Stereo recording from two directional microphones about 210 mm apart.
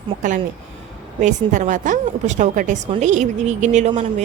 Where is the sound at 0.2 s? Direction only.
35° right (ahead or behind).